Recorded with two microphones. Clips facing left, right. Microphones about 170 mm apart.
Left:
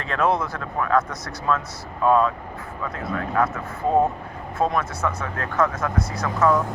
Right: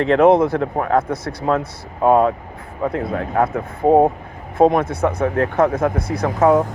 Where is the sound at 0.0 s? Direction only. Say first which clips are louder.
Right 11 dB; 20° right (ahead or behind).